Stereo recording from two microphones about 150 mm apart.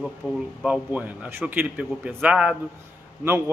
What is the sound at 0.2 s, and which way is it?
Speech, 5° right (ahead or behind).